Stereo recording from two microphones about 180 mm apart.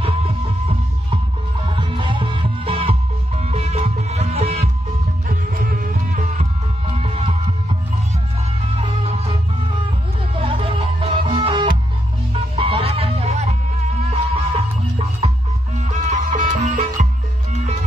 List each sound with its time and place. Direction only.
1.7 s music: 30° right (ahead or behind)
5.3 s music: 50° right (ahead or behind)
7.0 s music: 30° right (ahead or behind)
8.7 s music: 35° right (ahead or behind)
15.9 s music: 45° right (ahead or behind)